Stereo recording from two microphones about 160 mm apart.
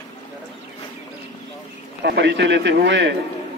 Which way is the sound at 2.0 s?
90° right.